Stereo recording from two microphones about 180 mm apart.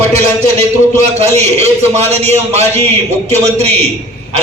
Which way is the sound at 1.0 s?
40° right (ahead or behind).